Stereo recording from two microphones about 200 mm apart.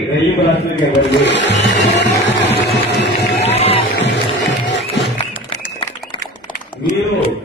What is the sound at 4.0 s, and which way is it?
Music, 60° left (ahead or behind).